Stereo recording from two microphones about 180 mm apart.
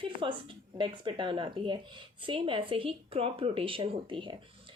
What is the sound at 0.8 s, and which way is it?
Speech, 25° right (ahead or behind).